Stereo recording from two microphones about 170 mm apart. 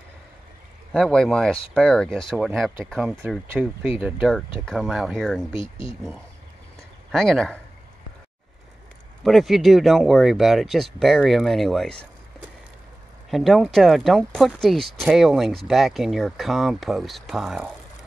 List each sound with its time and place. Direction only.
0.9 s speech: 5° left (ahead or behind)
5.5 s speech: 30° left (ahead or behind)
7.1 s speech: centre (ahead or behind)
9.2 s speech: centre (ahead or behind)
13.3 s speech: centre (ahead or behind)